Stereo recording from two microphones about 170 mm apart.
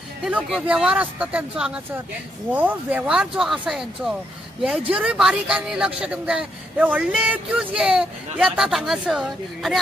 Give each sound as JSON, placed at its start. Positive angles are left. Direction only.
{"t": 0.2, "sound": "a man's voice", "side_deg": -5}